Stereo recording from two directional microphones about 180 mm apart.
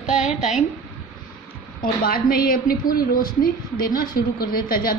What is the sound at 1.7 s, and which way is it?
A woman's voice, 55° left (ahead or behind).